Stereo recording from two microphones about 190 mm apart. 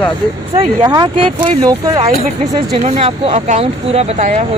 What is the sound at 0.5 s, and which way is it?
Speech, 25° right (ahead or behind).